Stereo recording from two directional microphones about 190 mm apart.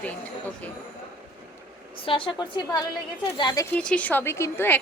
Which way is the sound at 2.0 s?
25° left (ahead or behind).